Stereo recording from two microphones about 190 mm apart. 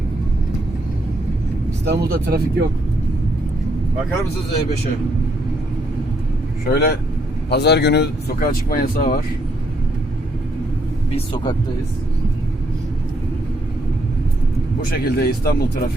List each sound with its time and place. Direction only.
1.9 s speech: 60° right (ahead or behind)
6.7 s speech: 55° left (ahead or behind)
11.1 s speech: 25° left (ahead or behind)
14.8 s speech: 55° left (ahead or behind)